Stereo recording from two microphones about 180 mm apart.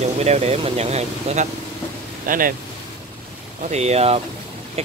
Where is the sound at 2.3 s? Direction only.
50° right (ahead or behind).